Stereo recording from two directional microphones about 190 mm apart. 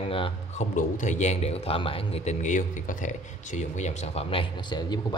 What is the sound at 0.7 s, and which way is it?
Speech, 40° left (ahead or behind).